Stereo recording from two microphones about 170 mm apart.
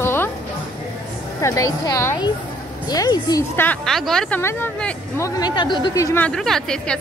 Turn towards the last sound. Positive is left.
turn(degrees=5)  # may be behind; listen again after turning